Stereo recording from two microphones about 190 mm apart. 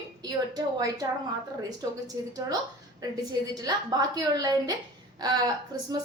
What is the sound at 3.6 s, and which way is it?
A woman's voice, 20° right (ahead or behind).